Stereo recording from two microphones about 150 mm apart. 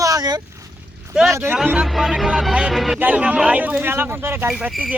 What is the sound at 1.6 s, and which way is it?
Speech, 5° right (ahead or behind).